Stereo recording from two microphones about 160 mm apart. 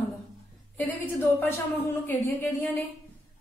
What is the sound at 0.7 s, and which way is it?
A woman's voice, 10° left (ahead or behind).